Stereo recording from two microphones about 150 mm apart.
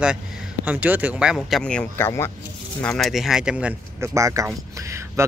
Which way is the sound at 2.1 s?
20° left (ahead or behind).